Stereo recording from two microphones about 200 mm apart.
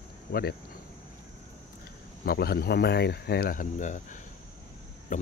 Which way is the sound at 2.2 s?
50° left (ahead or behind).